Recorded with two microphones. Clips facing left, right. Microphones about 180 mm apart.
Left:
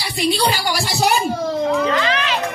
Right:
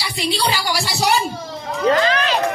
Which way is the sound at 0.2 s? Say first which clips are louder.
Left 3 dB; 50° left (ahead or behind).